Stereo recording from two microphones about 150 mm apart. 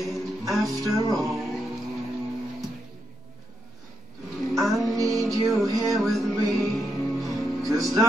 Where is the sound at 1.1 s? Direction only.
Centre (ahead or behind).